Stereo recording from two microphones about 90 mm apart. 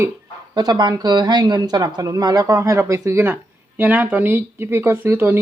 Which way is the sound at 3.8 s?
20° right (ahead or behind).